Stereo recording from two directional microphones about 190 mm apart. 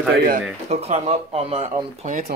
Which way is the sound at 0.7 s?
35° right (ahead or behind).